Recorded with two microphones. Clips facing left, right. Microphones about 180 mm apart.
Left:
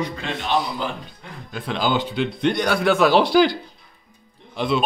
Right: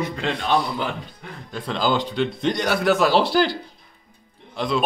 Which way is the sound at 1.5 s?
5° left (ahead or behind).